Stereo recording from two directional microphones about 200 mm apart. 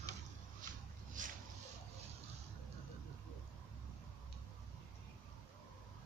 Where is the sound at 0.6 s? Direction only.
40° right (ahead or behind).